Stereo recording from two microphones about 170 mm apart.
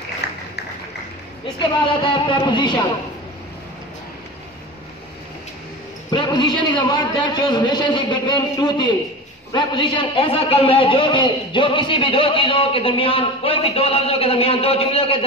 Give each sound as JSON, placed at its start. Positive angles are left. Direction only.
{"t": 1.6, "sound": "a man's voice", "side_deg": 25}
{"t": 6.0, "sound": "a man's voice", "side_deg": 25}